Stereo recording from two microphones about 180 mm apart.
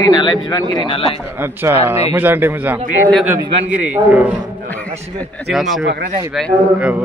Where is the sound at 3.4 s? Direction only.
35° right (ahead or behind).